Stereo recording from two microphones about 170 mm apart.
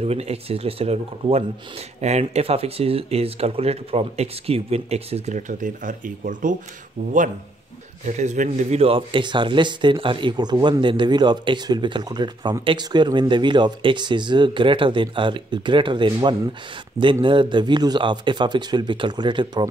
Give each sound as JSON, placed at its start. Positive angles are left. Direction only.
{"t": 0.0, "sound": "speech", "side_deg": -35}